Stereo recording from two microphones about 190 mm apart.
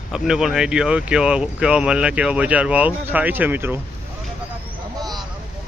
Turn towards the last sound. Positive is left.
turn(degrees=-10)  # may be behind; listen again after turning